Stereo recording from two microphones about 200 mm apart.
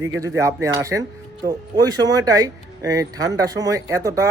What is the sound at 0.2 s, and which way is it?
Speech, 15° right (ahead or behind).